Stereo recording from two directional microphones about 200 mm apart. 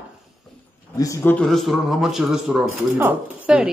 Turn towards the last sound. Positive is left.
turn(degrees=-5)  # may be behind; listen again after turning